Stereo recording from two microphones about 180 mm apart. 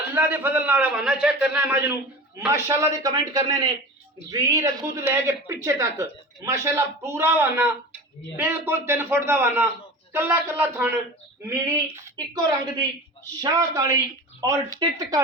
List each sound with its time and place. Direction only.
0.1 s a man's voice: 10° right (ahead or behind)
11.9 s a woman's voice: 20° right (ahead or behind)